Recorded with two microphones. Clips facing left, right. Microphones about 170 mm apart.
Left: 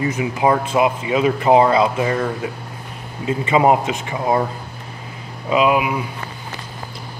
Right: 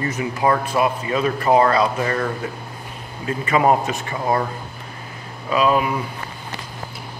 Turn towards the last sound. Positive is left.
turn(degrees=10)  # may be behind; listen again after turning